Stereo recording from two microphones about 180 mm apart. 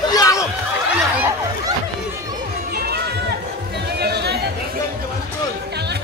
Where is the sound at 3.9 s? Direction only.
65° right (ahead or behind).